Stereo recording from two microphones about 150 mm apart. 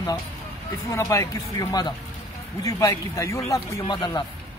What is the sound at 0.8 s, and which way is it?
A man's voice, 20° left (ahead or behind).